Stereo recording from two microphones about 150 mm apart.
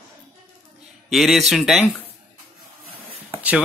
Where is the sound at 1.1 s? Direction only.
Centre (ahead or behind).